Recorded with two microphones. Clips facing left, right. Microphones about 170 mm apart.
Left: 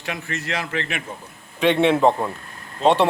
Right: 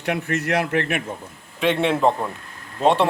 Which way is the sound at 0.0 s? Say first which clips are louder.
Right 6 dB; 60° right (ahead or behind).